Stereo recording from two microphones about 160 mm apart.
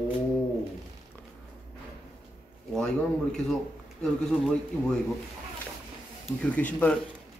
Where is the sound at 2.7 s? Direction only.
5° left (ahead or behind).